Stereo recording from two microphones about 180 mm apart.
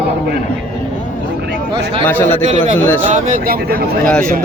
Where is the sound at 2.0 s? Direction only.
10° left (ahead or behind).